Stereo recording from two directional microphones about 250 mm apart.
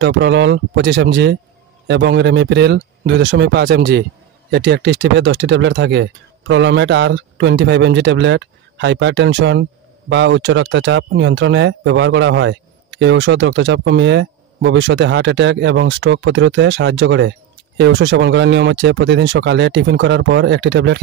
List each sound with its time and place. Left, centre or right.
0.0 s speech: right